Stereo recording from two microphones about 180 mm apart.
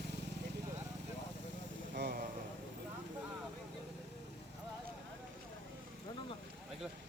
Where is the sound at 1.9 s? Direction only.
60° right (ahead or behind).